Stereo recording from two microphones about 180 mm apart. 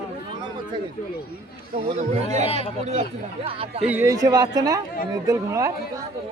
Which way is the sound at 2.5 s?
35° left (ahead or behind).